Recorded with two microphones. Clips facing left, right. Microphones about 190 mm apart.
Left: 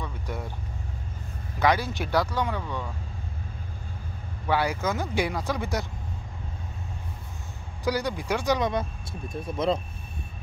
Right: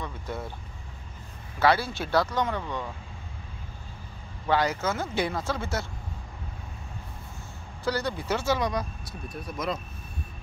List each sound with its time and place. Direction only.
0.0 s vehicle: 10° left (ahead or behind)
1.6 s speech: 15° left (ahead or behind)
2.6 s speech: 10° right (ahead or behind)
4.5 s speech: 10° left (ahead or behind)
7.8 s speech: 10° left (ahead or behind)